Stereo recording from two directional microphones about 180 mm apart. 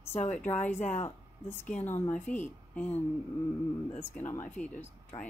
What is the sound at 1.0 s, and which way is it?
A woman's voice, 10° left (ahead or behind).